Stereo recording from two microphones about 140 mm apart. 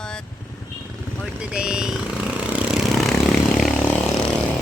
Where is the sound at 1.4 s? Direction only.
5° right (ahead or behind).